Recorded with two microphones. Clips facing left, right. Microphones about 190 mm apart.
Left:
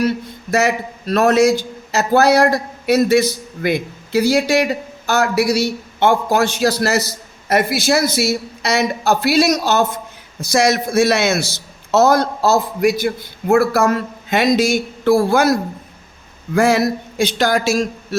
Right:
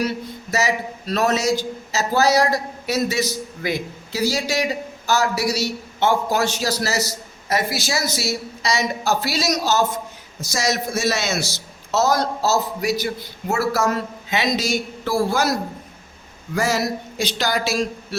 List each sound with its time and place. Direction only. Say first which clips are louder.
0.5 s a man's voice: left 5 dB; 55° left (ahead or behind)
16.6 s a man's voice: left 7 dB; 55° left (ahead or behind)